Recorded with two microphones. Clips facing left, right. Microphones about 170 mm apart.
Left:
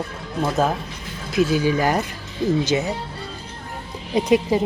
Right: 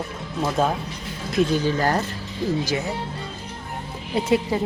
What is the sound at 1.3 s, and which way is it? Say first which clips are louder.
A woman's voice: left 2 dB; 5° left (ahead or behind).